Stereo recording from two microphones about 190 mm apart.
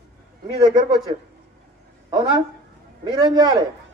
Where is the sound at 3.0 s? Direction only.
20° right (ahead or behind).